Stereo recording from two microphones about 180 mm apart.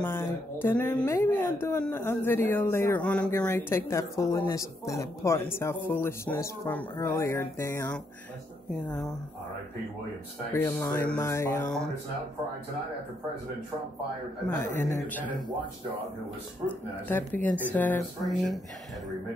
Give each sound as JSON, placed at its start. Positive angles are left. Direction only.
{"t": 0.0, "sound": "speech", "side_deg": 10}
{"t": 10.5, "sound": "speech", "side_deg": 10}
{"t": 14.8, "sound": "speech", "side_deg": 10}
{"t": 16.6, "sound": "speech", "side_deg": 10}